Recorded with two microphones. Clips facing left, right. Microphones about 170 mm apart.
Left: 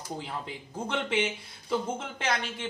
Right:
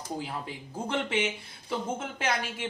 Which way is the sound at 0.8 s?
5° right (ahead or behind).